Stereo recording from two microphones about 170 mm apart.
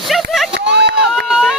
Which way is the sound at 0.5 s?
80° right.